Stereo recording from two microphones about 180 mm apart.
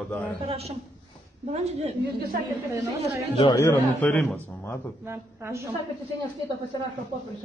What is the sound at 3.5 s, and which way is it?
A man's voice, 15° left (ahead or behind).